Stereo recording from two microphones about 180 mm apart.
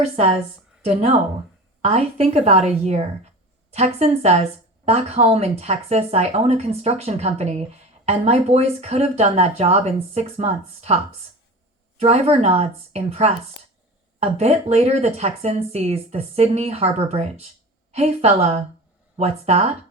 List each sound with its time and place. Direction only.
0.2 s speech: 35° right (ahead or behind)
1.8 s speech: 35° right (ahead or behind)